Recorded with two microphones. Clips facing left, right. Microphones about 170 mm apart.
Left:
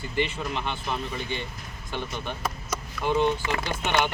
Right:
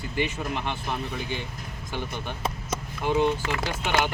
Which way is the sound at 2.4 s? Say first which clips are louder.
Right 1 dB; 25° right (ahead or behind).